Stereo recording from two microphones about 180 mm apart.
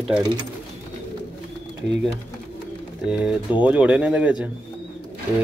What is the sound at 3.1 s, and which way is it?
Speech, 5° right (ahead or behind).